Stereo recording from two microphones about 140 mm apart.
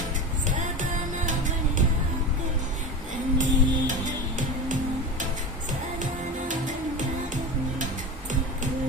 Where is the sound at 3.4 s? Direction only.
65° right (ahead or behind).